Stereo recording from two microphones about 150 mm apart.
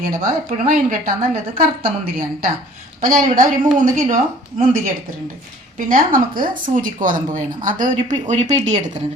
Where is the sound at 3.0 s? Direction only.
65° right (ahead or behind).